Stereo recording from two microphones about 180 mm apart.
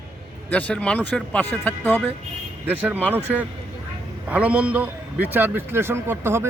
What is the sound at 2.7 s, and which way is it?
A man's voice, 10° right (ahead or behind).